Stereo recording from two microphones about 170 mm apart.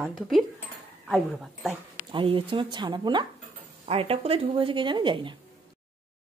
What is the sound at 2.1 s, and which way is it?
A woman's voice, 30° right (ahead or behind).